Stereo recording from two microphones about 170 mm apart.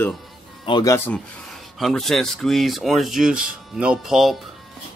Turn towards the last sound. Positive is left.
turn(degrees=0)  # may be behind; listen again after turning